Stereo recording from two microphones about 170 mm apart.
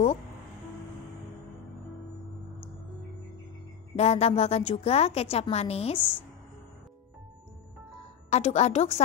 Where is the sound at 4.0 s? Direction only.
40° left (ahead or behind).